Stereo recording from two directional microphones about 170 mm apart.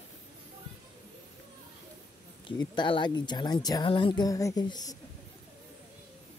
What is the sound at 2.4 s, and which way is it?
Speech, 25° left (ahead or behind).